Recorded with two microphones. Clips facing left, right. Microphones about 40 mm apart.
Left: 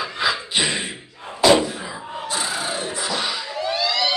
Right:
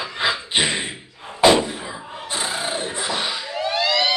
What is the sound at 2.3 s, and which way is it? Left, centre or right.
Emergency vehicle, right.